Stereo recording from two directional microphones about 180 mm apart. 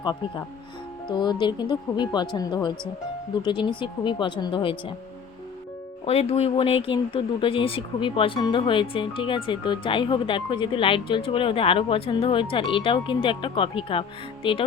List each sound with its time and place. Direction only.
0.0 s speech: 25° left (ahead or behind)
6.1 s speech: 35° left (ahead or behind)